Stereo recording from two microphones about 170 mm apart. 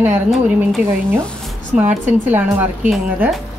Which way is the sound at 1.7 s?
10° right (ahead or behind).